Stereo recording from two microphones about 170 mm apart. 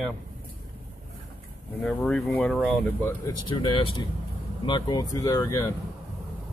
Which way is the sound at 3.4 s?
30° left (ahead or behind).